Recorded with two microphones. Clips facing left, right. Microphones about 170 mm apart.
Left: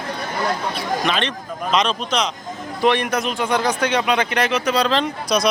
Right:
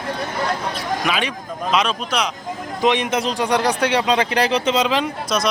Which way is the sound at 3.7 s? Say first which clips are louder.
Right 1 dB; 30° right (ahead or behind).